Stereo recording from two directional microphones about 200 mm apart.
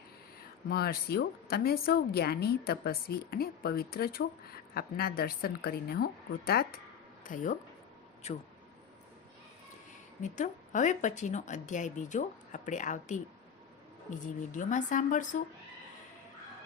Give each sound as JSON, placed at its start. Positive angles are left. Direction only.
{"t": 0.7, "sound": "a woman's voice", "side_deg": 50}
{"t": 10.2, "sound": "a woman's voice", "side_deg": 40}